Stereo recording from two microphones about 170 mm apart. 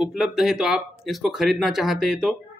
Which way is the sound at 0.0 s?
5° right (ahead or behind).